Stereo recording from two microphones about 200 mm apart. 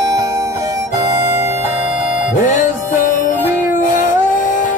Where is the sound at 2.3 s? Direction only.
35° left (ahead or behind).